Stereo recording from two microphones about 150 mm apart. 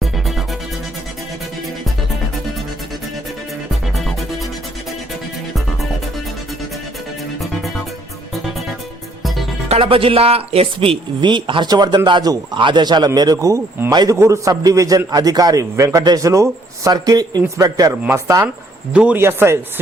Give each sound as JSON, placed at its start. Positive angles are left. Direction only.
{"t": 0.0, "sound": "music", "side_deg": 0}
{"t": 3.8, "sound": "music", "side_deg": 0}
{"t": 8.3, "sound": "music", "side_deg": 0}
{"t": 9.6, "sound": "speech", "side_deg": -40}
{"t": 13.9, "sound": "a man's voice", "side_deg": -30}